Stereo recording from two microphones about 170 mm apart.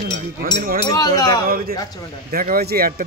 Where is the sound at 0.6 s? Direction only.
60° right (ahead or behind).